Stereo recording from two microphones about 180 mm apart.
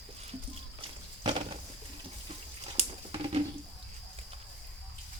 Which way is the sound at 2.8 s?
30° right (ahead or behind).